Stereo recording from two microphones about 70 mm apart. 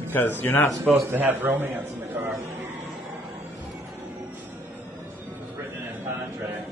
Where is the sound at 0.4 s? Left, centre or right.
Left.